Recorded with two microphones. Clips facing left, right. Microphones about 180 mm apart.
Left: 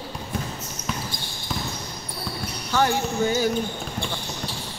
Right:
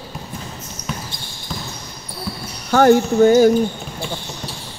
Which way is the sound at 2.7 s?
50° right (ahead or behind).